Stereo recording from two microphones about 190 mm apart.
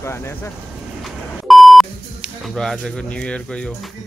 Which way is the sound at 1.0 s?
Centre (ahead or behind).